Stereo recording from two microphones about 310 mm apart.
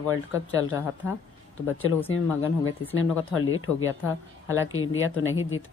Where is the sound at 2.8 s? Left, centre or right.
Left.